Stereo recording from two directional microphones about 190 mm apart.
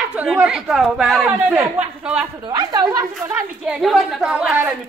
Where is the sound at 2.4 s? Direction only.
20° right (ahead or behind).